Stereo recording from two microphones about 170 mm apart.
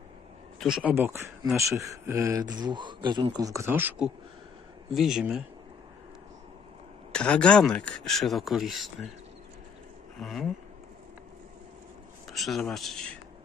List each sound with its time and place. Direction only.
0.6 s speech: 5° right (ahead or behind)
0.9 s speech: 15° right (ahead or behind)
7.1 s speech: 5° left (ahead or behind)
10.1 s speech: centre (ahead or behind)
12.3 s speech: centre (ahead or behind)